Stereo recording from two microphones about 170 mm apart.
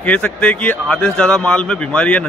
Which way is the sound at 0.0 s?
5° left (ahead or behind).